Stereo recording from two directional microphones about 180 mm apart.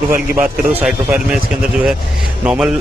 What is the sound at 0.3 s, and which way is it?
A man's voice, 15° right (ahead or behind).